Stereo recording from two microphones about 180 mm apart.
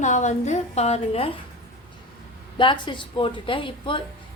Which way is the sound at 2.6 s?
25° left (ahead or behind).